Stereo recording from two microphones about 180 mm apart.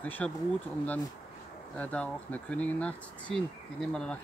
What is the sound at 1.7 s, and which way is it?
Speech, 5° left (ahead or behind).